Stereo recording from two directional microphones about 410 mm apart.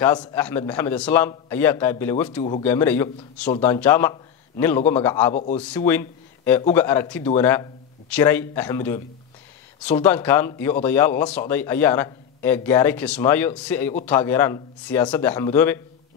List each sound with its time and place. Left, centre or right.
0.0 s speech: centre
5.3 s speech: centre
5.6 s speech: centre